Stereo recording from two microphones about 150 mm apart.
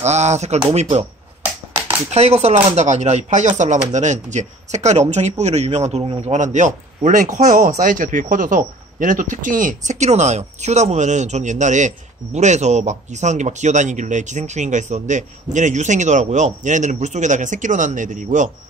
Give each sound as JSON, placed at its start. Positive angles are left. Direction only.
{"t": 0.0, "sound": "speech", "side_deg": -50}
{"t": 2.0, "sound": "speech", "side_deg": -45}